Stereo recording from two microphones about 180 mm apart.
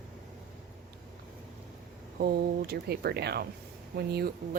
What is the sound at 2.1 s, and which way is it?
A woman's voice, 60° right (ahead or behind).